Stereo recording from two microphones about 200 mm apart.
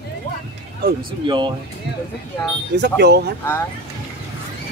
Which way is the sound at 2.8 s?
55° right (ahead or behind).